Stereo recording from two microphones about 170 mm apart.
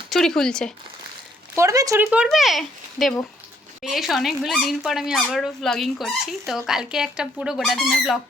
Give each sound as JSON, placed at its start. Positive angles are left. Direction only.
{"t": 0.1, "sound": "speech", "side_deg": 5}
{"t": 1.5, "sound": "speech", "side_deg": -20}
{"t": 2.0, "sound": "speech", "side_deg": -5}